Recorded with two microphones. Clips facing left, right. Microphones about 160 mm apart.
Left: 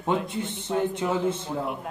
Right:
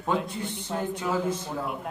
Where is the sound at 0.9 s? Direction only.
25° left (ahead or behind).